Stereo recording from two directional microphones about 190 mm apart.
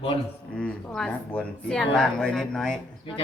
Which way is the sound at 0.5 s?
5° left (ahead or behind).